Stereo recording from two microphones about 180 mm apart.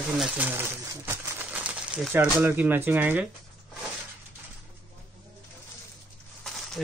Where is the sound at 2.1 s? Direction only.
10° right (ahead or behind).